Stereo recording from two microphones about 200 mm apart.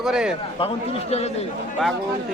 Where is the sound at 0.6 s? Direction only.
30° left (ahead or behind).